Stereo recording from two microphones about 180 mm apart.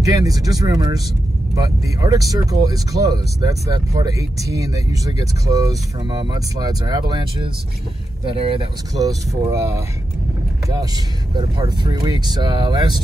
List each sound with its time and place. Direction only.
0.0 s speech: 20° right (ahead or behind)
8.4 s speech: 30° right (ahead or behind)
11.3 s speech: 25° right (ahead or behind)